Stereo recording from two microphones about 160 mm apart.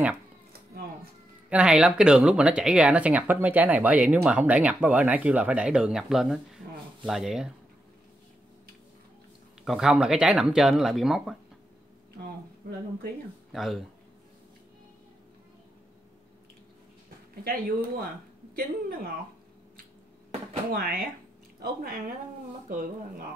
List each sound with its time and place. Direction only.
1.5 s speech: 5° right (ahead or behind)
9.7 s speech: 5° right (ahead or behind)
13.5 s speech: centre (ahead or behind)
17.4 s speech: 75° right (ahead or behind)
20.7 s speech: 70° right (ahead or behind)